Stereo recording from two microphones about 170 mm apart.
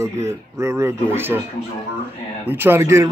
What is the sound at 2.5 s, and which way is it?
Speech, 15° right (ahead or behind).